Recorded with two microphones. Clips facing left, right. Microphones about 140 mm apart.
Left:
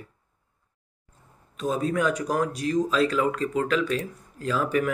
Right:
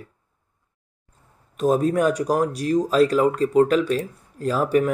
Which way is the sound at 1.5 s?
45° right (ahead or behind).